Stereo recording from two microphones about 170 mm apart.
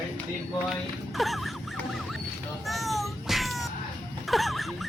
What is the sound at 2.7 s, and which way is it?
Cat, centre (ahead or behind).